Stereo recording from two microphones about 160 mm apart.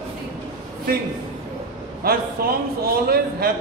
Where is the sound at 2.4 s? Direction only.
75° right (ahead or behind).